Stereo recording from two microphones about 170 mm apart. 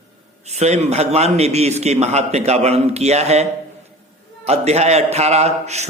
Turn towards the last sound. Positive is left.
turn(degrees=-40)  # may be behind; listen again after turning